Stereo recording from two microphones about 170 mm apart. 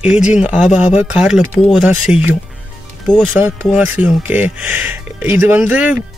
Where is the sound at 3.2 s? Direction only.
10° right (ahead or behind).